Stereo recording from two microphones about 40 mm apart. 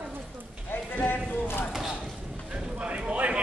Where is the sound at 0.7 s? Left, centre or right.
Left.